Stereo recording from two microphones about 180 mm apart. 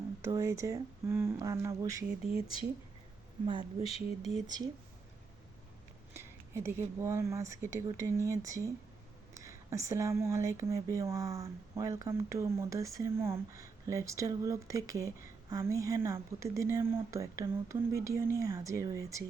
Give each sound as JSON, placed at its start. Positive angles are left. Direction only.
{"t": 0.2, "sound": "speech", "side_deg": -15}
{"t": 2.3, "sound": "speech", "side_deg": 30}
{"t": 3.4, "sound": "speech", "side_deg": -25}
{"t": 3.8, "sound": "speech", "side_deg": 35}
{"t": 4.4, "sound": "speech", "side_deg": -20}
{"t": 6.1, "sound": "speech", "side_deg": -15}